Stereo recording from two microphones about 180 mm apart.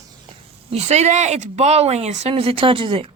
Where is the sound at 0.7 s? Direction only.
35° right (ahead or behind).